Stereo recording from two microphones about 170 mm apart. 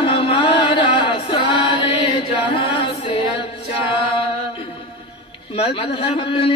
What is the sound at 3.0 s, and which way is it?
Music, 30° left (ahead or behind).